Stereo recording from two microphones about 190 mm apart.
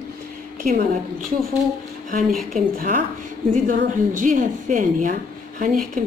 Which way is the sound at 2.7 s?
45° right (ahead or behind).